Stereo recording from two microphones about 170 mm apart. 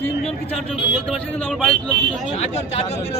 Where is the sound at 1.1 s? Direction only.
5° left (ahead or behind).